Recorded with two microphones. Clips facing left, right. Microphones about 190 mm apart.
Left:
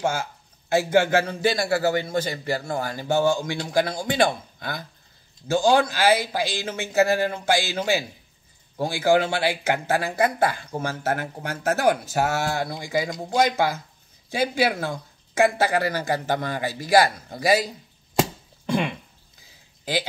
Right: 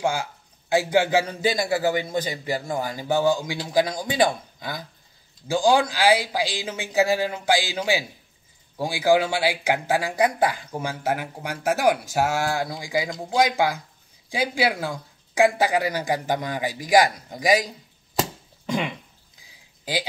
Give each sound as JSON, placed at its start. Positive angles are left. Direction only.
{"t": 0.0, "sound": "a man's voice", "side_deg": -10}
{"t": 18.7, "sound": "speech", "side_deg": -15}